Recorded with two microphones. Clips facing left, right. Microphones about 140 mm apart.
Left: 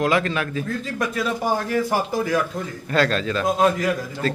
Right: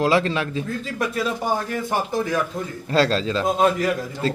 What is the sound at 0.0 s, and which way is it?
Speech, 30° right (ahead or behind).